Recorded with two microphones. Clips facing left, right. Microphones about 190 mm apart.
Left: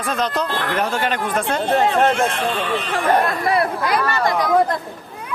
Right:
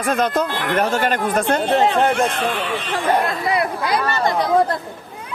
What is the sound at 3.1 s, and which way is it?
Speech, 20° right (ahead or behind).